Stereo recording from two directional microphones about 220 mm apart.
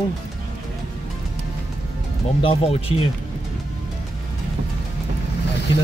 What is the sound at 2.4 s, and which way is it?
Speech, 25° left (ahead or behind).